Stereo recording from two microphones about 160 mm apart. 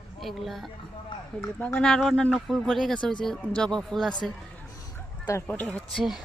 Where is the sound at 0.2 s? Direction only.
Centre (ahead or behind).